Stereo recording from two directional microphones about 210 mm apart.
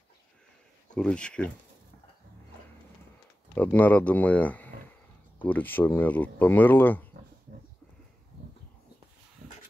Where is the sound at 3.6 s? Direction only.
5° left (ahead or behind).